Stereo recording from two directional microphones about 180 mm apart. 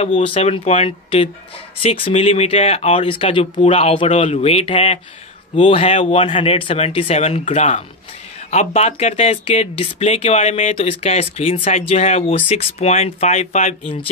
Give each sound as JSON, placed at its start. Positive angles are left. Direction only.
{"t": 0.0, "sound": "speech", "side_deg": 35}